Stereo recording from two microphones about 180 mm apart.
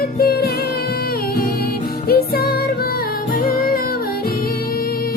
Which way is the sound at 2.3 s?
60° left (ahead or behind).